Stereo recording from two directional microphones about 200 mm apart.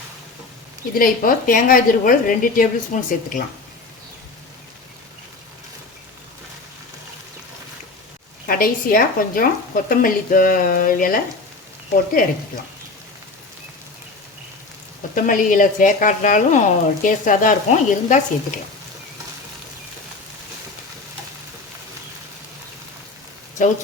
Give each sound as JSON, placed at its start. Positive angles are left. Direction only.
{"t": 0.9, "sound": "a woman's voice", "side_deg": 45}
{"t": 8.4, "sound": "a woman's voice", "side_deg": 45}
{"t": 15.1, "sound": "a woman's voice", "side_deg": 40}